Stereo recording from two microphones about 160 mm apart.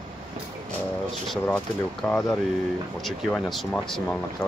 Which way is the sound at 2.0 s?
5° left (ahead or behind).